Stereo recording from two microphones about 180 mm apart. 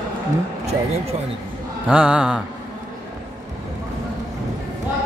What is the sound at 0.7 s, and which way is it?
Speech, 35° right (ahead or behind).